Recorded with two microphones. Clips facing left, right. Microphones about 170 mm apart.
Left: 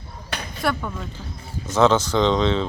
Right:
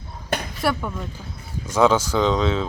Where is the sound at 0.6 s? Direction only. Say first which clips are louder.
Left 1 dB; 5° right (ahead or behind).